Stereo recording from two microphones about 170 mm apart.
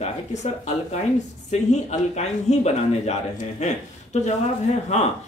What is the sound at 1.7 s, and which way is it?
Speech, 40° left (ahead or behind).